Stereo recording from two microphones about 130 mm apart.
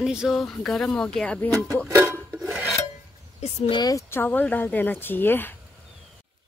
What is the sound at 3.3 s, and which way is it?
Speech, 55° left (ahead or behind).